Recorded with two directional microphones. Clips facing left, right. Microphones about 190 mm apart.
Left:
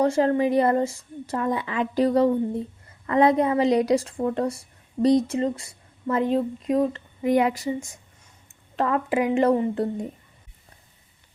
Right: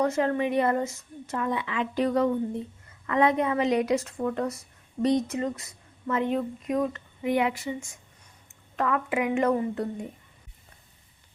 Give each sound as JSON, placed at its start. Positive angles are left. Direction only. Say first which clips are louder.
{"t": 0.0, "sound": "speech", "louder": "left 4 dB", "side_deg": 30}